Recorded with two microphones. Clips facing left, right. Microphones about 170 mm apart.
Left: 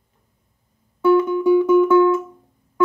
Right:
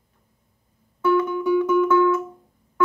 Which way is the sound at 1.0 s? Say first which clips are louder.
Left 5 dB; 25° left (ahead or behind).